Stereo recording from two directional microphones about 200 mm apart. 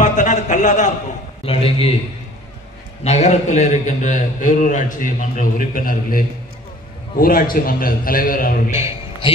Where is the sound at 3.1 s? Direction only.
35° left (ahead or behind).